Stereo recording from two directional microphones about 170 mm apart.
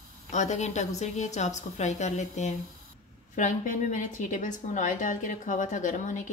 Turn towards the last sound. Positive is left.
turn(degrees=50)  # may be behind; listen again after turning